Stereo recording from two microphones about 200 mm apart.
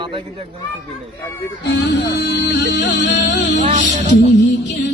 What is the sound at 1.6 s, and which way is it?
Music, 60° left (ahead or behind).